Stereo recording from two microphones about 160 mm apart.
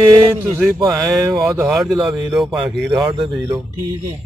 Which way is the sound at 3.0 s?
30° right (ahead or behind).